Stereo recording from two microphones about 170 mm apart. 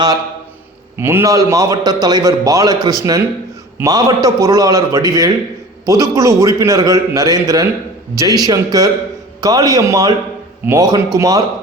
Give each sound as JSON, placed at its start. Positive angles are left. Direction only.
{"t": 0.9, "sound": "a man's voice", "side_deg": -15}